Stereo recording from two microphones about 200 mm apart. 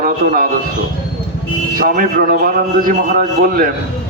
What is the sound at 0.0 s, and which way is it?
Speech, 45° right (ahead or behind).